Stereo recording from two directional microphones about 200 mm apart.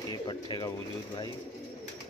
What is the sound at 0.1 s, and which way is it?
Speech, 20° left (ahead or behind).